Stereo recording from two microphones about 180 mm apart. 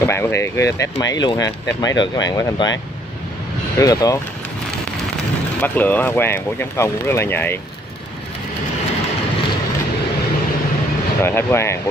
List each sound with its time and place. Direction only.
0.0 s speech: 15° left (ahead or behind)
5.6 s speech: 10° left (ahead or behind)
11.2 s speech: 15° left (ahead or behind)